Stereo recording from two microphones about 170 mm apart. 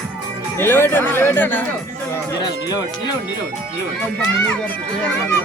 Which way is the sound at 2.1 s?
20° left (ahead or behind).